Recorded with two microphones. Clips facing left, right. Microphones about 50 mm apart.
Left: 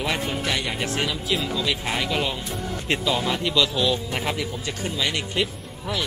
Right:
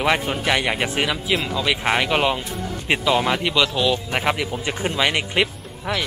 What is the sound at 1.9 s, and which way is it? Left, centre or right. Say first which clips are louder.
Speech: right 6 dB; right.